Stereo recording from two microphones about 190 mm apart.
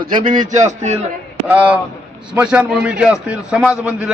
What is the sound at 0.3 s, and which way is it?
Speech, 40° right (ahead or behind).